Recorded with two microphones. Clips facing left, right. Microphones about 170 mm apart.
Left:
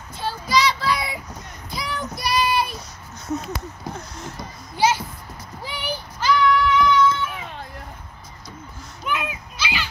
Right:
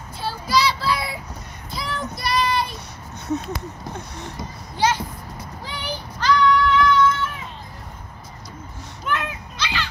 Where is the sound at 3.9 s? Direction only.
65° right (ahead or behind).